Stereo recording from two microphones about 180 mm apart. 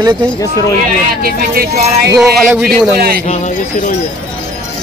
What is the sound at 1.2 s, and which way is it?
Speech, 55° right (ahead or behind).